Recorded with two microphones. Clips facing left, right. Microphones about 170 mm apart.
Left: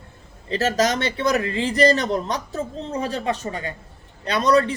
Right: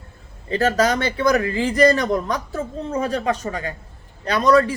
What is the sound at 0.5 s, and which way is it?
Speech, 25° left (ahead or behind).